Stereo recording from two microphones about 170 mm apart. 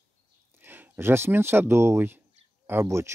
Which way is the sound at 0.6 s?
10° right (ahead or behind).